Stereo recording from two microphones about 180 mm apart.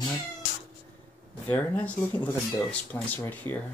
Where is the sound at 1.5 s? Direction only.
10° left (ahead or behind).